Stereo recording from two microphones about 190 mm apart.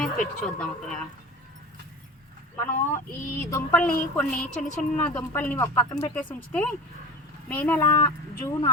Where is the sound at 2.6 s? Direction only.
15° left (ahead or behind).